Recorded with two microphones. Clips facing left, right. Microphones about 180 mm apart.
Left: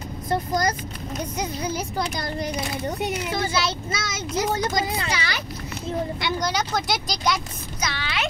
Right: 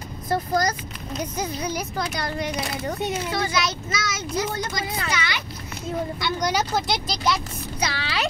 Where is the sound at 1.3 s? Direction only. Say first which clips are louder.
Left 1 dB; 25° left (ahead or behind).